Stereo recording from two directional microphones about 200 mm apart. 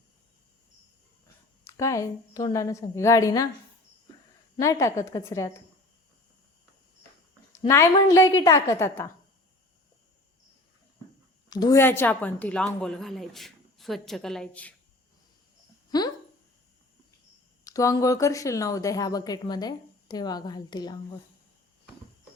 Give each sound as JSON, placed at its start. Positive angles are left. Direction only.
{"t": 1.6, "sound": "a woman's voice", "side_deg": 15}
{"t": 4.6, "sound": "a woman's voice", "side_deg": 15}
{"t": 7.7, "sound": "a woman's voice", "side_deg": 15}
{"t": 11.4, "sound": "a woman's voice", "side_deg": 20}
{"t": 15.9, "sound": "a sound", "side_deg": 20}
{"t": 17.6, "sound": "a woman's voice", "side_deg": 15}